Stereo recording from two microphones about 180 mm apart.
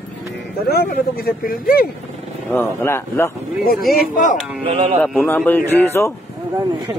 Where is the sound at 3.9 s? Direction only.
45° left (ahead or behind).